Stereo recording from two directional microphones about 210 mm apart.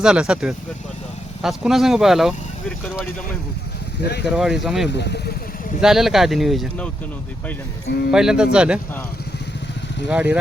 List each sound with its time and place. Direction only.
0.0 s speech: 5° right (ahead or behind)
4.3 s speech: centre (ahead or behind)
4.9 s speech: 55° left (ahead or behind)
5.8 s speech: centre (ahead or behind)
8.1 s speech: 5° right (ahead or behind)
10.1 s speech: 5° right (ahead or behind)